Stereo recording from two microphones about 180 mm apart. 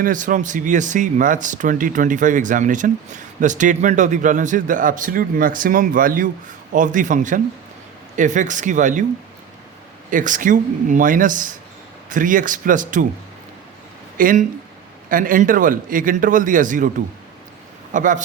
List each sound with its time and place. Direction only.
0.0 s speech: 45° right (ahead or behind)
10.1 s speech: 45° right (ahead or behind)
14.2 s speech: 50° right (ahead or behind)
17.9 s speech: 45° right (ahead or behind)